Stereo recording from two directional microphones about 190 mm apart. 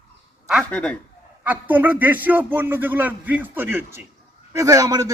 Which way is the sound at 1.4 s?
10° right (ahead or behind).